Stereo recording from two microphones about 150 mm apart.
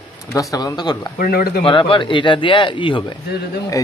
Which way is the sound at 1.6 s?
35° left (ahead or behind).